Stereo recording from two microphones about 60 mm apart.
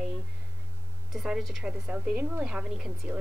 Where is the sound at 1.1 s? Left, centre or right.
Centre.